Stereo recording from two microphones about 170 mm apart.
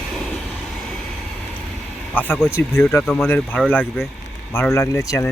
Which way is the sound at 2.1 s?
10° left (ahead or behind).